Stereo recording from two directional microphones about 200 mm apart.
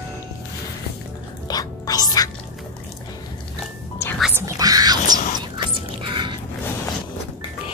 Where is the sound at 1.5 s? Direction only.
20° left (ahead or behind).